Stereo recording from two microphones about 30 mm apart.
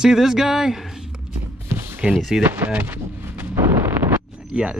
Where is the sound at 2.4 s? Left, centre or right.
Right.